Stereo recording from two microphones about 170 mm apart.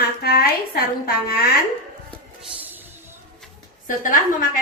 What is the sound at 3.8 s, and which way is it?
Speech, 50° left (ahead or behind).